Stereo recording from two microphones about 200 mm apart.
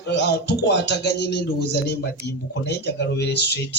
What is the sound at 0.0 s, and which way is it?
Speech, 60° left (ahead or behind).